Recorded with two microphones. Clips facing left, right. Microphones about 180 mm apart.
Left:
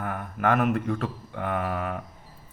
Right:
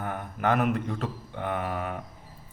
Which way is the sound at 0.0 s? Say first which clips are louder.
Left 2 dB; 20° right (ahead or behind).